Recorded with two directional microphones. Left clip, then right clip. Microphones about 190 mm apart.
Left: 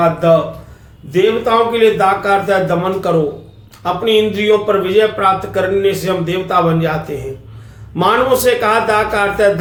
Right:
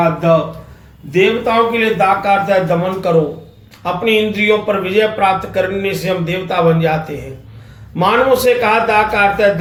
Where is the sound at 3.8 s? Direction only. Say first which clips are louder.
Left 1 dB; 15° left (ahead or behind).